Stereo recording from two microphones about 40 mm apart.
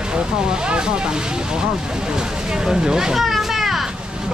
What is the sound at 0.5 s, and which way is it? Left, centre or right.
Speech, right.